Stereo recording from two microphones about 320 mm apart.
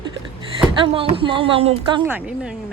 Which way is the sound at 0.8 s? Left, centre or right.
Centre.